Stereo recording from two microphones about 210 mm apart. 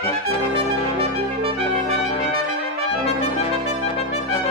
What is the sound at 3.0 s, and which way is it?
Trumpet, 30° left (ahead or behind).